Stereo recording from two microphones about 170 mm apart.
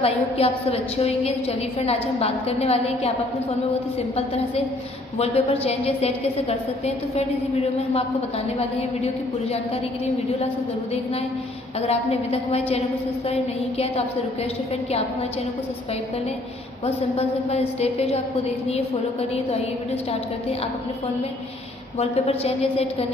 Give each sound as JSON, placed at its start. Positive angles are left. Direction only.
{"t": 0.0, "sound": "a woman's voice", "side_deg": 35}
{"t": 5.2, "sound": "a woman's voice", "side_deg": 35}
{"t": 8.5, "sound": "a woman's voice", "side_deg": 35}
{"t": 11.8, "sound": "a woman's voice", "side_deg": 35}
{"t": 16.8, "sound": "a woman's voice", "side_deg": 35}
{"t": 21.9, "sound": "a woman's voice", "side_deg": 35}